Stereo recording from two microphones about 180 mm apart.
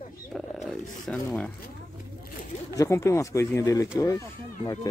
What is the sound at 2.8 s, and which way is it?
Speech, 15° left (ahead or behind).